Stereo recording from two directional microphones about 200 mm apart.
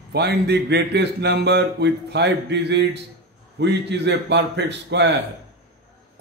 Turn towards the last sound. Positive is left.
turn(degrees=-60)  # may be behind; listen again after turning